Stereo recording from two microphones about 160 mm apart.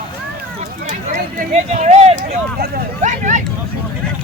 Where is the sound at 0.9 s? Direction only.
50° right (ahead or behind).